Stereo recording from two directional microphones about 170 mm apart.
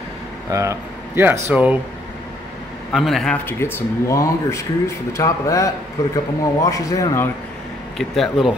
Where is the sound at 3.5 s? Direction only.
15° left (ahead or behind).